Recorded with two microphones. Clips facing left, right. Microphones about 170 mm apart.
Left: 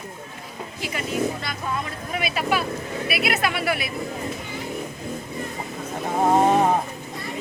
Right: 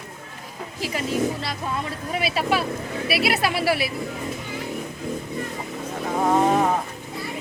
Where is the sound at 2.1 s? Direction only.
30° right (ahead or behind).